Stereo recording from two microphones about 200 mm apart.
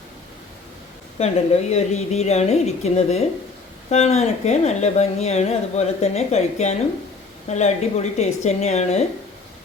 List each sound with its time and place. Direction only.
1.2 s a woman's voice: 35° left (ahead or behind)